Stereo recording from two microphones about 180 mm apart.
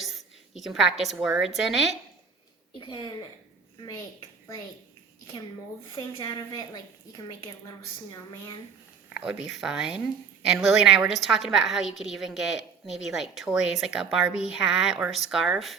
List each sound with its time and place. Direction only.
0.1 s a woman's voice: centre (ahead or behind)
2.7 s a woman's voice: 25° left (ahead or behind)
6.2 s a woman's voice: 20° left (ahead or behind)
9.0 s speech: 5° right (ahead or behind)